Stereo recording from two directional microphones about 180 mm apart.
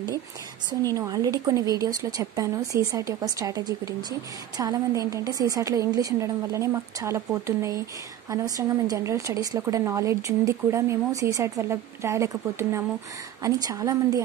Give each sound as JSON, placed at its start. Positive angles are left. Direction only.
{"t": 0.8, "sound": "a woman's voice", "side_deg": -20}